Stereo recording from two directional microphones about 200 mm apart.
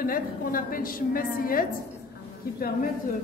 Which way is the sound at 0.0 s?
45° left (ahead or behind).